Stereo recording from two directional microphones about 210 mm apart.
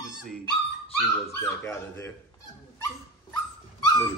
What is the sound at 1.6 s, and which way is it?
Speech, 10° left (ahead or behind).